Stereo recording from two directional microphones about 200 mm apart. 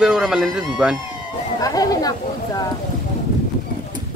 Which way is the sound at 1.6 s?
20° left (ahead or behind).